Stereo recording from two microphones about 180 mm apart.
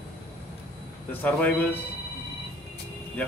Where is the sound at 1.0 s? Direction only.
10° left (ahead or behind).